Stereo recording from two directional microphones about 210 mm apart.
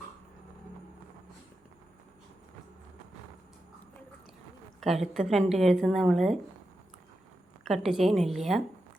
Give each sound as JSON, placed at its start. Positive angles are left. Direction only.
{"t": 4.8, "sound": "a woman's voice", "side_deg": 0}
{"t": 7.6, "sound": "a woman's voice", "side_deg": 0}